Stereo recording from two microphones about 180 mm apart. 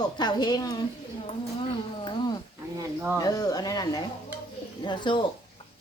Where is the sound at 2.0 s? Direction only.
25° left (ahead or behind).